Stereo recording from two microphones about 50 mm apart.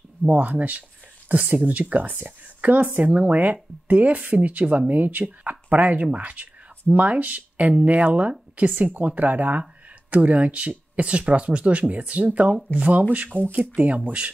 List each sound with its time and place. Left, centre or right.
0.3 s speech: right